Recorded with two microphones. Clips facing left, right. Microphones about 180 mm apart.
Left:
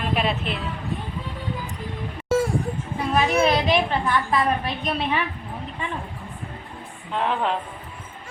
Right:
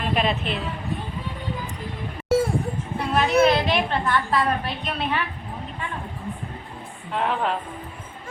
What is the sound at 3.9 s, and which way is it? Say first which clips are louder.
Speech: even; 10° left (ahead or behind).